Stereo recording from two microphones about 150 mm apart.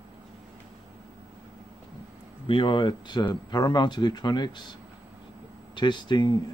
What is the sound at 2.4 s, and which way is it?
Speech, 35° left (ahead or behind).